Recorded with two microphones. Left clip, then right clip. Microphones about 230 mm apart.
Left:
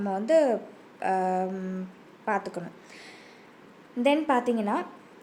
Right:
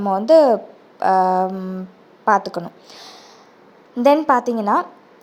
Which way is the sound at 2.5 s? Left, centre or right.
Right.